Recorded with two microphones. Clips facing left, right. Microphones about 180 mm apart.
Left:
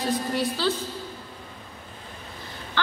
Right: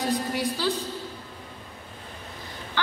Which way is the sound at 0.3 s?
15° right (ahead or behind).